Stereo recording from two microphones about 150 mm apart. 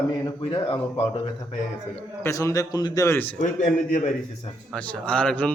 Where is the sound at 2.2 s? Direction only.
20° left (ahead or behind).